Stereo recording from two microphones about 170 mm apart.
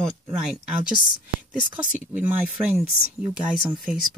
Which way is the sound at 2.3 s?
10° right (ahead or behind).